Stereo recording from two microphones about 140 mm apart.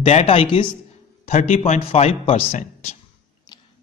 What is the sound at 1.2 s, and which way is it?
Speech, 60° left (ahead or behind).